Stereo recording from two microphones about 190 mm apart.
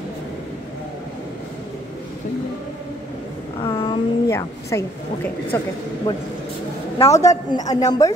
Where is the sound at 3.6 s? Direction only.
25° left (ahead or behind).